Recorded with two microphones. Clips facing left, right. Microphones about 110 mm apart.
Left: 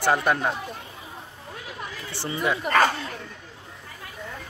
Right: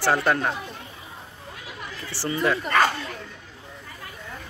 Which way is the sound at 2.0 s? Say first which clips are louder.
Right 3 dB; 20° left (ahead or behind).